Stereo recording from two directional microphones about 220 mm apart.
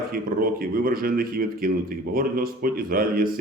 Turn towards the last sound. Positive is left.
turn(degrees=-40)  # may be behind; listen again after turning